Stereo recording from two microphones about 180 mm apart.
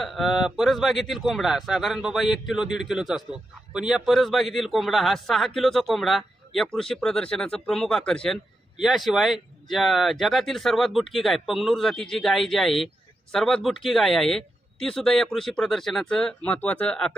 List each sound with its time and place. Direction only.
0.0 s speech: centre (ahead or behind)